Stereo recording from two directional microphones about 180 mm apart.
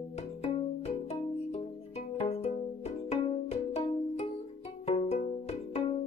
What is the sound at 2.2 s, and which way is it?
Music, 35° left (ahead or behind).